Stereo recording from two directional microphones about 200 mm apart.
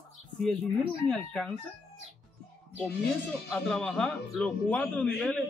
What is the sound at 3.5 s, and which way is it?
Speech, centre (ahead or behind).